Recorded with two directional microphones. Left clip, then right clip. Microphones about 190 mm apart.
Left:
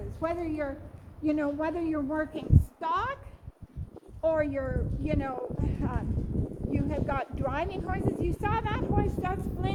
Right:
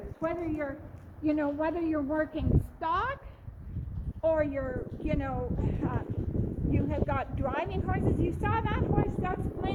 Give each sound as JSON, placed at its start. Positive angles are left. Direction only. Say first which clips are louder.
{"t": 0.2, "sound": "a woman's voice", "louder": "left 1 dB", "side_deg": 35}
{"t": 4.2, "sound": "speech", "louder": "even", "side_deg": 40}